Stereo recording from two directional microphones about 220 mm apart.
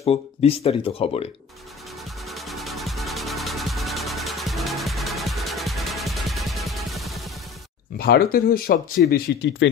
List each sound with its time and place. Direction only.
0.0 s speech: 25° left (ahead or behind)
2.2 s music: centre (ahead or behind)
8.0 s speech: 45° left (ahead or behind)